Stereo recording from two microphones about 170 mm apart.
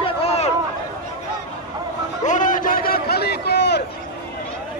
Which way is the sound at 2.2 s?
45° left (ahead or behind).